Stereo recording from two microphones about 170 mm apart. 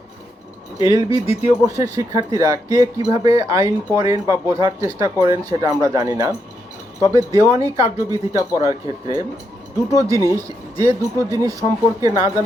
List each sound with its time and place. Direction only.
0.8 s speech: 20° right (ahead or behind)